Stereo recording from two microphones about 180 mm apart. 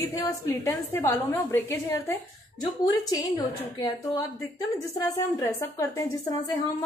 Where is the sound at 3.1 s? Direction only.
20° left (ahead or behind).